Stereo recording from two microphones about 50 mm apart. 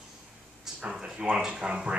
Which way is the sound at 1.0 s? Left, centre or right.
Right.